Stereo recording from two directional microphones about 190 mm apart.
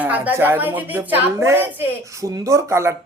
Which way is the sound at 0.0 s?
10° right (ahead or behind).